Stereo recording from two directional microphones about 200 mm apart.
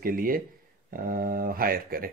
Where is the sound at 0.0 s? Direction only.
45° right (ahead or behind).